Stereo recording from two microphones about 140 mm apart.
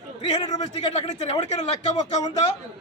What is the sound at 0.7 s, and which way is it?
Speech, 50° left (ahead or behind).